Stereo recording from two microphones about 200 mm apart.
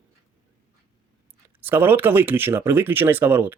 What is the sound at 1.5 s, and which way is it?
Speech, 10° right (ahead or behind).